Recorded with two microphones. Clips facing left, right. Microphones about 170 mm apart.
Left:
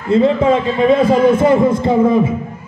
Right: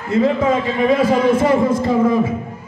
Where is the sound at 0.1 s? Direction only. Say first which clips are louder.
Left 4 dB; 25° left (ahead or behind).